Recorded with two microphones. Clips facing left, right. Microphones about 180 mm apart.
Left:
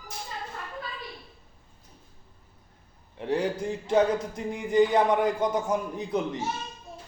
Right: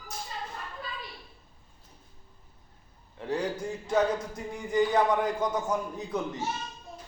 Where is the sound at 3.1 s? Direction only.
20° left (ahead or behind).